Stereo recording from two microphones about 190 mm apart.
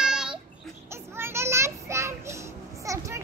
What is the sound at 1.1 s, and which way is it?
Children playing, 15° right (ahead or behind).